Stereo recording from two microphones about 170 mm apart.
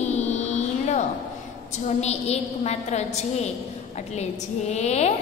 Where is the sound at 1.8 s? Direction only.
40° left (ahead or behind).